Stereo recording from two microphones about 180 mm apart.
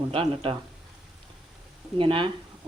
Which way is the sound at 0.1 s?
30° right (ahead or behind).